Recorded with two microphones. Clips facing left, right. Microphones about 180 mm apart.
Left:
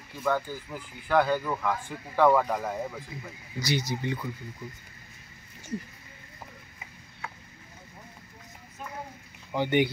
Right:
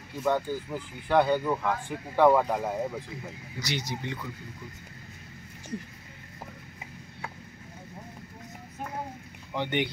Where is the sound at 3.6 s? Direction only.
5° left (ahead or behind).